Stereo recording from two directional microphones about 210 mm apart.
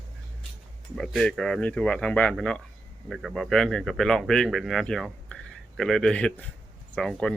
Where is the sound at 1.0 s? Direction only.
Centre (ahead or behind).